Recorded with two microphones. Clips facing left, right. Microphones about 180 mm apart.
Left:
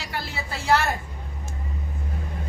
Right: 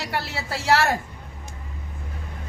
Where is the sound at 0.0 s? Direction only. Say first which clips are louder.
Right 3 dB; 70° right (ahead or behind); by 0.9 s 90° right.